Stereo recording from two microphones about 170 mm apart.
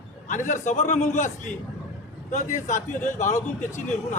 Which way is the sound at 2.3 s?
45° left (ahead or behind).